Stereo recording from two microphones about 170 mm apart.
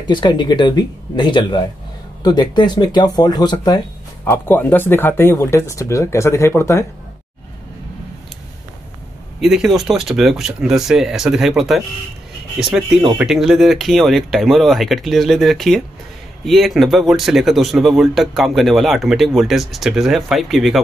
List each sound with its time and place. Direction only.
0.0 s speech: 25° left (ahead or behind)
9.4 s speech: 5° right (ahead or behind)